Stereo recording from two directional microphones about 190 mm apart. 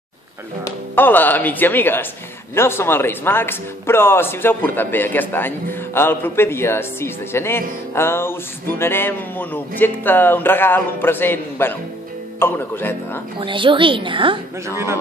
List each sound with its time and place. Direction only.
0.7 s speech: 10° left (ahead or behind)
13.4 s a woman's voice: 25° right (ahead or behind)